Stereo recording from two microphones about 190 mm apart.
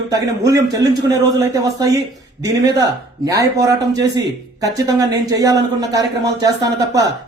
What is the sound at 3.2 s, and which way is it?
A man's voice, 15° right (ahead or behind).